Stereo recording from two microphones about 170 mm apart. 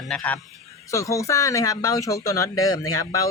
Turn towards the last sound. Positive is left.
turn(degrees=20)  # may be behind; listen again after turning